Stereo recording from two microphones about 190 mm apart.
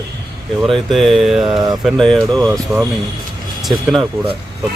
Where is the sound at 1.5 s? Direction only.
25° right (ahead or behind).